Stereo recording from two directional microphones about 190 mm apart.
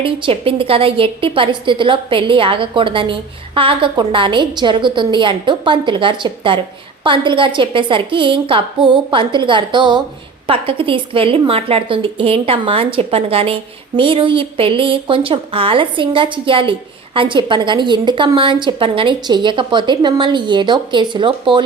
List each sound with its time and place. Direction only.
0.0 s a woman's voice: 25° right (ahead or behind)